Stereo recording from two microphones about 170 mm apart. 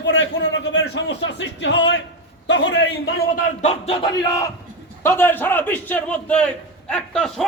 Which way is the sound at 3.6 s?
35° left (ahead or behind).